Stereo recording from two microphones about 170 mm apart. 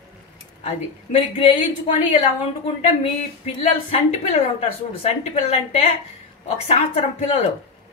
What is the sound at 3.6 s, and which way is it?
A woman's voice, 40° left (ahead or behind).